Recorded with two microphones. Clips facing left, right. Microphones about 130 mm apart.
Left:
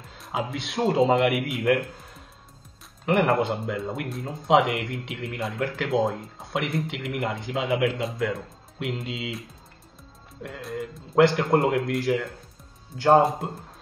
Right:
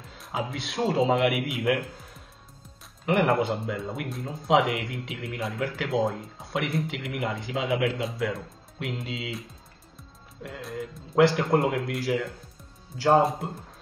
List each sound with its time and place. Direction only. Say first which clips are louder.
0.0 s speech: left 2 dB; centre (ahead or behind)